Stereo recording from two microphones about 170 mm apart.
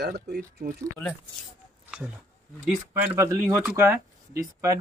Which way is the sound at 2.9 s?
15° right (ahead or behind).